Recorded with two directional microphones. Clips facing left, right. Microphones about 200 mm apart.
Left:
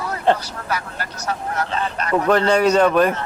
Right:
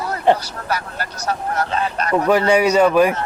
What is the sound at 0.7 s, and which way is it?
Speech, 35° right (ahead or behind).